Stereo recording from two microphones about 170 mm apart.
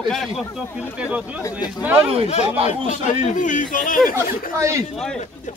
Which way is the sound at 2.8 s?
45° left (ahead or behind).